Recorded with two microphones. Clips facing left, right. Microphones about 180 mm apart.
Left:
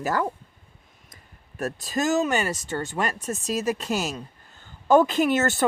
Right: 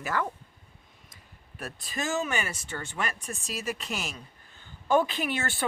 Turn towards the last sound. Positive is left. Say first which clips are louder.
# left 10 dB
turn(degrees=45)  # may be behind; listen again after turning